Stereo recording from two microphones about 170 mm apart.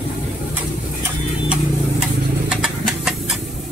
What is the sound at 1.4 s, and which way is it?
Vehicle, 5° right (ahead or behind).